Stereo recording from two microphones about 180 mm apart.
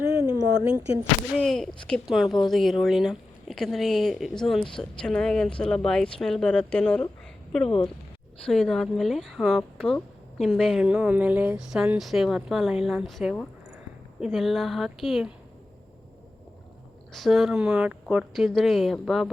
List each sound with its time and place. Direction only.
0.2 s speech: 15° right (ahead or behind)
1.4 s speech: centre (ahead or behind)
8.4 s speech: 5° left (ahead or behind)
17.1 s speech: centre (ahead or behind)